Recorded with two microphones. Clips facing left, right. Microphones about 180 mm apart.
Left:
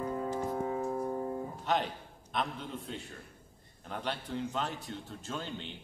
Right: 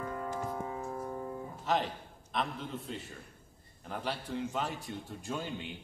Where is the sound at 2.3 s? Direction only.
Centre (ahead or behind).